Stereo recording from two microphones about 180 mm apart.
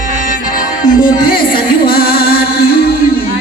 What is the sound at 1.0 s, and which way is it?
Music, 55° left (ahead or behind).